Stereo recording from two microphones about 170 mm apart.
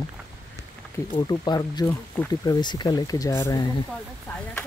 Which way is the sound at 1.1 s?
25° left (ahead or behind).